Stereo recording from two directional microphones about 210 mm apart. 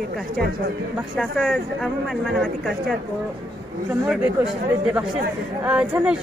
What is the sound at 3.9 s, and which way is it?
Speech, 10° right (ahead or behind).